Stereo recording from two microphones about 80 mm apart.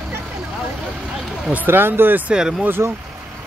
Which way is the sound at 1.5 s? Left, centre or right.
Right.